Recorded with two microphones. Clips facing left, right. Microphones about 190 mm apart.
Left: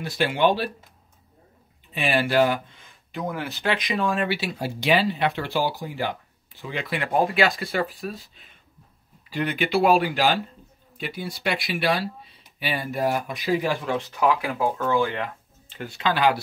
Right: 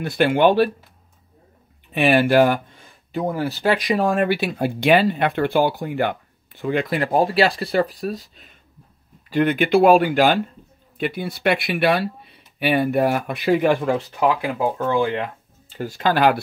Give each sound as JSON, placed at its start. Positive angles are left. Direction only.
{"t": 0.0, "sound": "speech", "side_deg": -55}
{"t": 1.9, "sound": "speech", "side_deg": -60}
{"t": 3.1, "sound": "speech", "side_deg": -35}
{"t": 9.3, "sound": "speech", "side_deg": -50}
{"t": 13.8, "sound": "speech", "side_deg": -30}
{"t": 15.7, "sound": "speech", "side_deg": -40}